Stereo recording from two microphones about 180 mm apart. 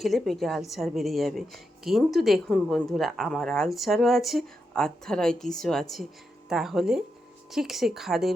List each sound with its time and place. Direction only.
0.0 s a woman's voice: centre (ahead or behind)